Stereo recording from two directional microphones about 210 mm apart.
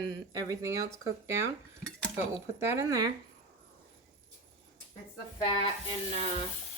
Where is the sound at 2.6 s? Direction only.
15° right (ahead or behind).